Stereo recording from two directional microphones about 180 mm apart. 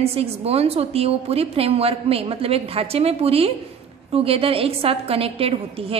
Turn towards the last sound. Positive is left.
turn(degrees=-30)  # may be behind; listen again after turning